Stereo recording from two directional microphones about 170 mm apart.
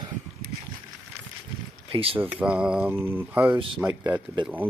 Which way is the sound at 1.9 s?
35° right (ahead or behind).